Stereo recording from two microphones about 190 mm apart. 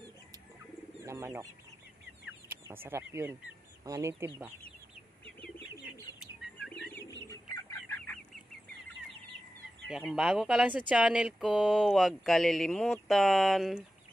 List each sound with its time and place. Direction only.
1.0 s speech: 15° right (ahead or behind)
2.2 s chicken: 10° right (ahead or behind)
3.8 s speech: 15° right (ahead or behind)
6.1 s bird: 5° right (ahead or behind)
7.2 s chicken: 15° left (ahead or behind)
9.8 s speech: 5° right (ahead or behind)